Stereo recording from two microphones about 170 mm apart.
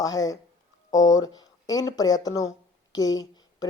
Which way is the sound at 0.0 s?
20° left (ahead or behind).